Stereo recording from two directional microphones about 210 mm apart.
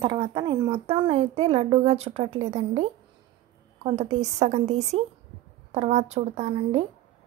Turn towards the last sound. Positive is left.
turn(degrees=-30)  # may be behind; listen again after turning